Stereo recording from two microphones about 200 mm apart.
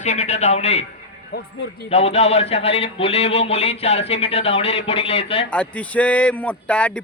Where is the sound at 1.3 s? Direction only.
55° left (ahead or behind).